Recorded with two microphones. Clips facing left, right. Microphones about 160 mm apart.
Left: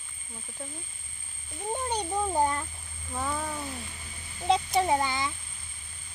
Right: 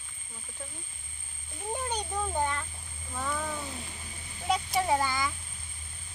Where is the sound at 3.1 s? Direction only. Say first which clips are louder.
Left 2 dB; 25° left (ahead or behind).